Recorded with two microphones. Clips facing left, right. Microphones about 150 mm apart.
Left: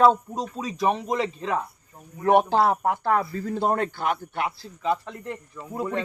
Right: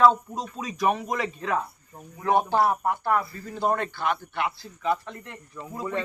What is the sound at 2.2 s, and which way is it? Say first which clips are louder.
Speech: left 3 dB; 75° left (ahead or behind).